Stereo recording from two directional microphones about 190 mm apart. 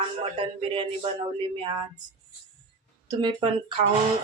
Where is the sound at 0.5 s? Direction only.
30° right (ahead or behind).